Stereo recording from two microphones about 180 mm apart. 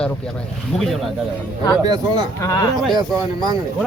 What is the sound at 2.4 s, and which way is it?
Speech, 20° left (ahead or behind).